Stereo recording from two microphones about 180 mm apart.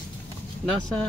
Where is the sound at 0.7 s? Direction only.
5° left (ahead or behind).